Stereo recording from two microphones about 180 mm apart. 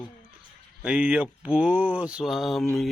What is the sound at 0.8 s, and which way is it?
Mantra, 5° right (ahead or behind).